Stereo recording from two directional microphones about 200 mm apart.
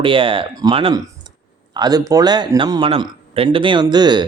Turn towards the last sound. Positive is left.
turn(degrees=-20)  # may be behind; listen again after turning